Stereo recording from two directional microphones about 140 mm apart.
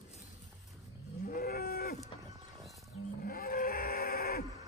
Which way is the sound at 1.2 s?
90° left.